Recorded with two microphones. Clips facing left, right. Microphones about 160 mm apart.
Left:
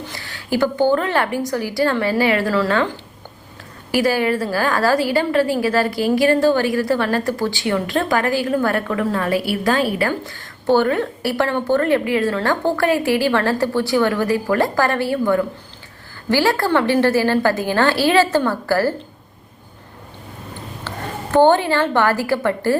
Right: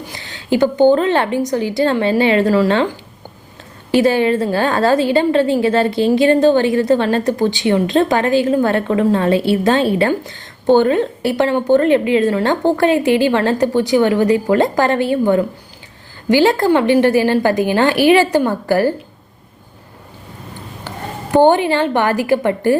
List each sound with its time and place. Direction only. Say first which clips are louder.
0.0 s a woman's voice: right 1 dB; 20° right (ahead or behind)
3.9 s a woman's voice: right 5 dB; 25° right (ahead or behind)
21.3 s a woman's voice: right 2 dB; 15° right (ahead or behind)